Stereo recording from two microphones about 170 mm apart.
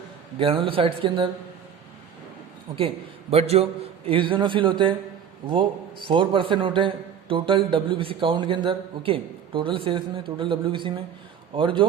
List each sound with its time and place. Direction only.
0.3 s a man's voice: 30° right (ahead or behind)
2.7 s a man's voice: 35° right (ahead or behind)